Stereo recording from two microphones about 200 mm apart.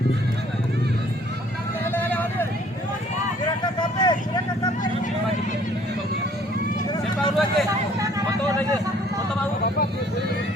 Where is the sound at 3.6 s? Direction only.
20° left (ahead or behind).